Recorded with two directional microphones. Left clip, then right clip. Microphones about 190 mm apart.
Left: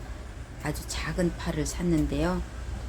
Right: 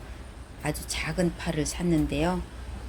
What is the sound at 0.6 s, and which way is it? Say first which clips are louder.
A woman's voice: right 2 dB; 10° right (ahead or behind).